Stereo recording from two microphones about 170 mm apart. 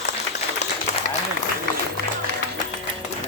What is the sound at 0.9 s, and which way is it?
Applause, 45° left (ahead or behind).